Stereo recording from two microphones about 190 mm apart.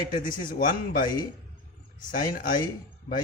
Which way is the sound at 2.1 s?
45° left (ahead or behind).